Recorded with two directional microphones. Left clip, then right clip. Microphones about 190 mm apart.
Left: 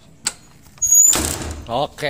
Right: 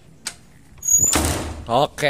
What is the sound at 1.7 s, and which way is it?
Speech, 30° right (ahead or behind).